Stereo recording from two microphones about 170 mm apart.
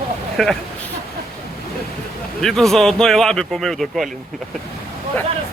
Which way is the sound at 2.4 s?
Centre (ahead or behind).